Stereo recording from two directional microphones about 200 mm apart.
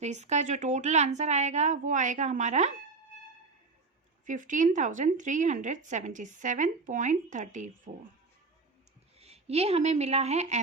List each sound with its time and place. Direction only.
0.0 s a woman's voice: 35° right (ahead or behind)
4.3 s a woman's voice: 40° right (ahead or behind)
9.1 s speech: 30° right (ahead or behind)